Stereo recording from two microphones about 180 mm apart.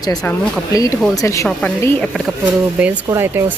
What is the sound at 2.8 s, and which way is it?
Speech, 10° right (ahead or behind).